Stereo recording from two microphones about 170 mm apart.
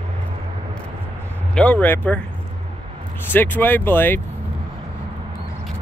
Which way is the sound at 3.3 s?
10° left (ahead or behind).